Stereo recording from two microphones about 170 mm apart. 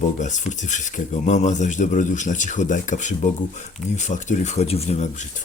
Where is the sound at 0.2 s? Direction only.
45° left (ahead or behind).